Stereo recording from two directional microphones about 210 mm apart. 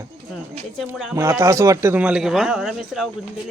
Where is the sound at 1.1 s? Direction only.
15° right (ahead or behind).